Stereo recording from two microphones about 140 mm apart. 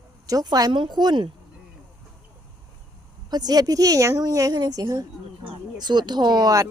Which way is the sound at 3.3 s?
30° right (ahead or behind).